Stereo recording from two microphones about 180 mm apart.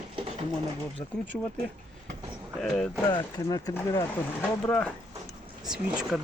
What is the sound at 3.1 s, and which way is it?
Speech, 20° left (ahead or behind).